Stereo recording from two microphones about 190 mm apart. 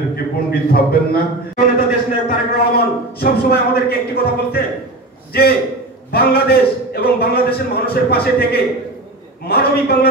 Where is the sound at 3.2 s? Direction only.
55° left (ahead or behind).